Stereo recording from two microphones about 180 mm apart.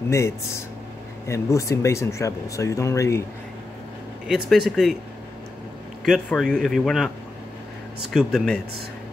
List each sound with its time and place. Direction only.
0.1 s speech: 15° left (ahead or behind)
4.3 s speech: centre (ahead or behind)
6.0 s speech: centre (ahead or behind)
8.1 s speech: centre (ahead or behind)